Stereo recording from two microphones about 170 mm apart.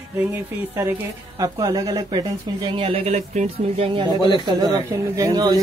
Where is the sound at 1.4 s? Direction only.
20° right (ahead or behind).